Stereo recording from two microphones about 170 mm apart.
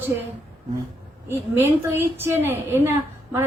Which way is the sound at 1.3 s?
15° right (ahead or behind).